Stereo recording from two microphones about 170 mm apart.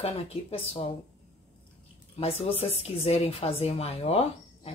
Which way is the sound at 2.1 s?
35° left (ahead or behind).